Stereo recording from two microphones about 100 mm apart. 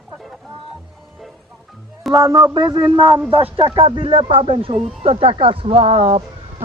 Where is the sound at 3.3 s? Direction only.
65° right (ahead or behind); by 6.2 s 90° right.